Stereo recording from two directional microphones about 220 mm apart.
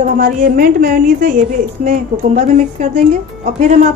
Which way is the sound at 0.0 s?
40° right (ahead or behind).